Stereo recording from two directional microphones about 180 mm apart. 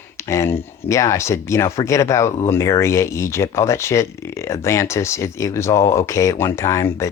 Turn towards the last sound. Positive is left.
turn(degrees=15)  # may be behind; listen again after turning